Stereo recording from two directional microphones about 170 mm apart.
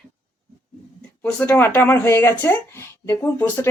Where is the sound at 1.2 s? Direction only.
10° left (ahead or behind).